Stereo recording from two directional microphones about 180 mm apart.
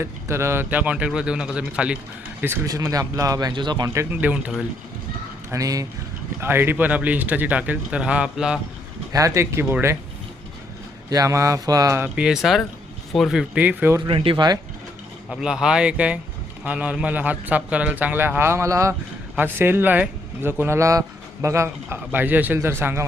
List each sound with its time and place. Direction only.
0.0 s a man's voice: 15° right (ahead or behind)
4.1 s a man's voice: 10° right (ahead or behind)
5.5 s a man's voice: 20° right (ahead or behind)
9.1 s a man's voice: 15° right (ahead or behind)
11.1 s a man's voice: 20° right (ahead or behind)
14.0 s a man's voice: 30° right (ahead or behind)
15.3 s a man's voice: 5° right (ahead or behind)